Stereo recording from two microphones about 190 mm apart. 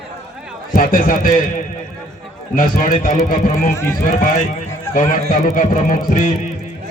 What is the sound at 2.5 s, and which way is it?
Speech, 45° left (ahead or behind).